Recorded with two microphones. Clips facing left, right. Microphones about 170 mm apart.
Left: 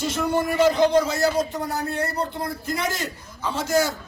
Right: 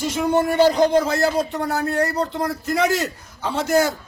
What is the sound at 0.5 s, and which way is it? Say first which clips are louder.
A man's voice: right 1 dB; 35° right (ahead or behind).